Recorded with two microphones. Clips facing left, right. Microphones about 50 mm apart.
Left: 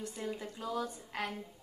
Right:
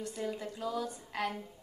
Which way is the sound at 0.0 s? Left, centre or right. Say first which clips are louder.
Right 2 dB; centre.